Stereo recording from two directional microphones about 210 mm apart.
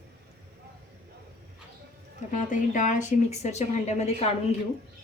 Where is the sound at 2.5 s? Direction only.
40° left (ahead or behind).